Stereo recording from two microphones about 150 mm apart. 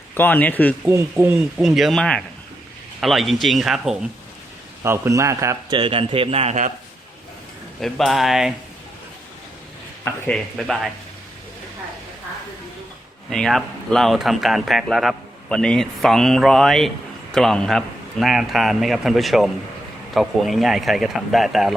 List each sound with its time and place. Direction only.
0.1 s speech: 15° left (ahead or behind)
0.9 s speech: 15° right (ahead or behind)
4.8 s a man's voice: 20° right (ahead or behind)
5.7 s a man's voice: 35° right (ahead or behind)
7.8 s speech: centre (ahead or behind)
10.1 s speech: 5° left (ahead or behind)
13.3 s speech: centre (ahead or behind)